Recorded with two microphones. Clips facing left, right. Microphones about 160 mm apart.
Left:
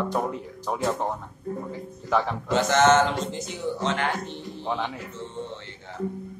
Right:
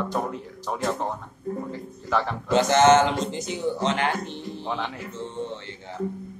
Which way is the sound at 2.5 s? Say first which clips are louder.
Right 3 dB; 20° right (ahead or behind).